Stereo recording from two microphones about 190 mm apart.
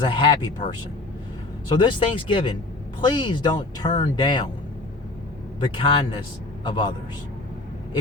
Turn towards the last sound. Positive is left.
turn(degrees=25)  # may be behind; listen again after turning